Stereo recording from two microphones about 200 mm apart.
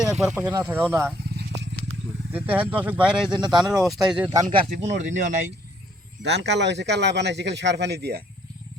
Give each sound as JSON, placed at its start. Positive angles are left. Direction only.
{"t": 0.0, "sound": "speech", "side_deg": -5}
{"t": 1.3, "sound": "a sound", "side_deg": -55}
{"t": 2.3, "sound": "speech", "side_deg": -10}
{"t": 3.3, "sound": "speech", "side_deg": -20}
{"t": 3.6, "sound": "speech", "side_deg": 0}
{"t": 4.3, "sound": "speech", "side_deg": -15}
{"t": 4.9, "sound": "speech", "side_deg": -40}
{"t": 6.2, "sound": "speech", "side_deg": -60}